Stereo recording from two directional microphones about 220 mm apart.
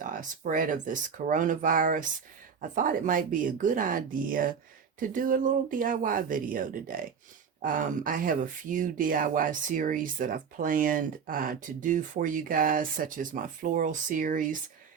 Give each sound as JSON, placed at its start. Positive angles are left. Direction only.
{"t": 0.0, "sound": "speech", "side_deg": -35}